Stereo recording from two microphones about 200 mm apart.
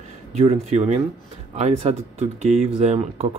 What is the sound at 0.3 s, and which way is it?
Speech, 35° right (ahead or behind).